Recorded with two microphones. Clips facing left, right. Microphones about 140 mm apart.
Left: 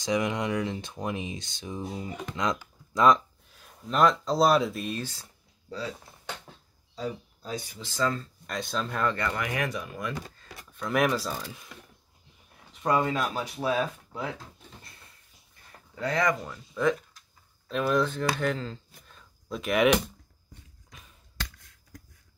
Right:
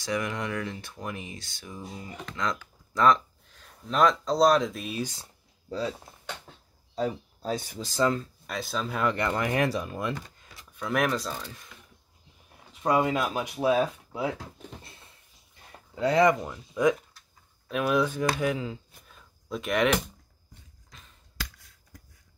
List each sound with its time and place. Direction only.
0.0 s speech: 20° left (ahead or behind); by 5.0 s centre (ahead or behind)
5.0 s a sound: 20° right (ahead or behind)
8.0 s speech: 20° right (ahead or behind)
8.5 s speech: centre (ahead or behind)
9.1 s speech: 25° right (ahead or behind)
10.7 s speech: centre (ahead or behind)
12.8 s speech: 10° right (ahead or behind)
15.9 s speech: 25° right (ahead or behind)
16.5 s speech: 15° right (ahead or behind); by 20.0 s centre (ahead or behind)